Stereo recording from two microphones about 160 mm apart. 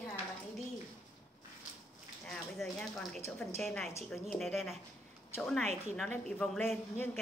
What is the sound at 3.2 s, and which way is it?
Speech, 15° left (ahead or behind).